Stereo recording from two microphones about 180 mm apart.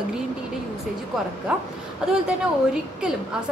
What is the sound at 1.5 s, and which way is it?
A woman's voice, 5° right (ahead or behind).